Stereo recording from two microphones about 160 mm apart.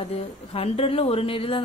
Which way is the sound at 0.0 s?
35° left (ahead or behind).